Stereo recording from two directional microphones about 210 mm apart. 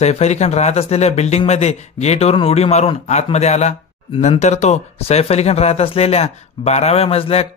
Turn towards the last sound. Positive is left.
turn(degrees=25)  # may be behind; listen again after turning